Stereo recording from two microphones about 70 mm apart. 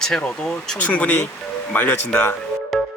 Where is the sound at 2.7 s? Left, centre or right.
Centre.